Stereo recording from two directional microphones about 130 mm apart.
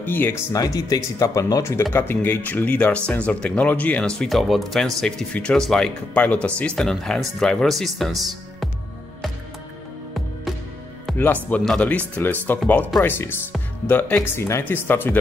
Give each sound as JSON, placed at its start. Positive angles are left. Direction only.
{"t": 0.0, "sound": "speech", "side_deg": 15}
{"t": 11.5, "sound": "speech", "side_deg": 10}